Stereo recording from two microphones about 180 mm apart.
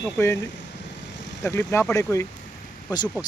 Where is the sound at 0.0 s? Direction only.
15° left (ahead or behind).